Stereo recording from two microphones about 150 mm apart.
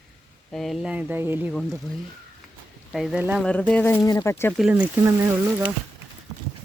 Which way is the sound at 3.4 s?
5° left (ahead or behind).